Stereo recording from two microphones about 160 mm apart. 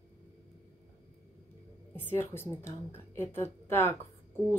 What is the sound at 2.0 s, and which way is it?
A woman's voice, 15° left (ahead or behind).